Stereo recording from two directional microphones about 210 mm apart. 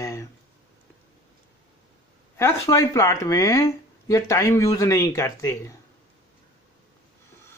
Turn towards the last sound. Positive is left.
turn(degrees=15)  # may be behind; listen again after turning